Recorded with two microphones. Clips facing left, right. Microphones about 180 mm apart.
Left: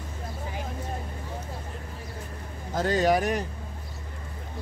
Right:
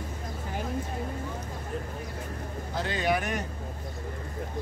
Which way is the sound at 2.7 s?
40° left (ahead or behind).